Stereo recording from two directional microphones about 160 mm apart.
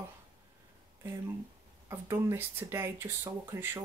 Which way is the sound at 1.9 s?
15° right (ahead or behind).